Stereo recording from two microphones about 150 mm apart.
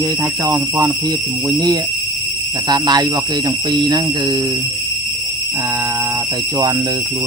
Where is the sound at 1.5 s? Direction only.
25° right (ahead or behind).